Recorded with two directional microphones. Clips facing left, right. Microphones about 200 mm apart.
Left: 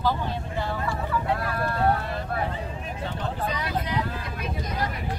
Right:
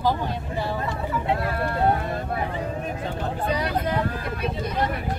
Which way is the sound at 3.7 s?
50° right (ahead or behind).